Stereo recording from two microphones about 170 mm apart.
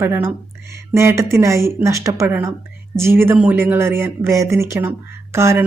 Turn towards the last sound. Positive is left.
turn(degrees=-15)  # may be behind; listen again after turning